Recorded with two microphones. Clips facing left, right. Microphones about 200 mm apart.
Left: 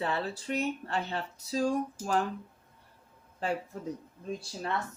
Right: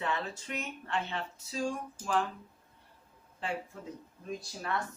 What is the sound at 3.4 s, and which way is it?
Speech, 40° left (ahead or behind).